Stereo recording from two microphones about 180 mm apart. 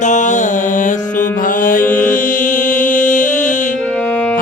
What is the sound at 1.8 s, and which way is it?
Mantra, 10° left (ahead or behind).